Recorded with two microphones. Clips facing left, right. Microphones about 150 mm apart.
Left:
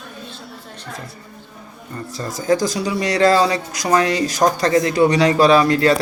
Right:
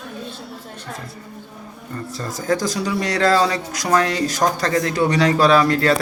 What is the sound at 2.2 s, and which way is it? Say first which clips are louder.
Speech: left 4 dB; 15° left (ahead or behind).